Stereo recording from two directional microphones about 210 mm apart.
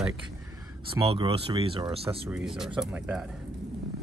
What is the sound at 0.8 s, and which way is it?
Speech, 25° right (ahead or behind).